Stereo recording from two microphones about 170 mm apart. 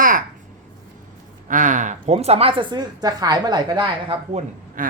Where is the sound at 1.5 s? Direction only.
50° right (ahead or behind); by 4.4 s 30° right (ahead or behind).